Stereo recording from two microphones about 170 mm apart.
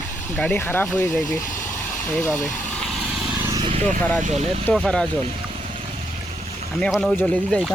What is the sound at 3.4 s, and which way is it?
Vehicle, 25° right (ahead or behind).